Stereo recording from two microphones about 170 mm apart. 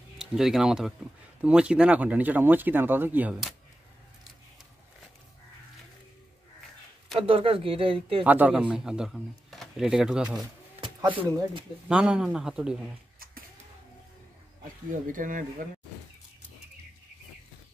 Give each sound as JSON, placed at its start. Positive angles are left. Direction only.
{"t": 0.2, "sound": "speech", "side_deg": -5}
{"t": 7.2, "sound": "speech", "side_deg": -35}
{"t": 8.2, "sound": "speech", "side_deg": -10}
{"t": 11.9, "sound": "speech", "side_deg": -5}
{"t": 14.6, "sound": "speech", "side_deg": -50}